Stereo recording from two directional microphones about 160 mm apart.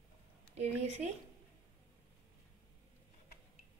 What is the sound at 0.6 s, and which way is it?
Speech, 40° right (ahead or behind).